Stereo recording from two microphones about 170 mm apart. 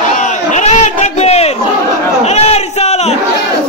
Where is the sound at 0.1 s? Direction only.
45° left (ahead or behind).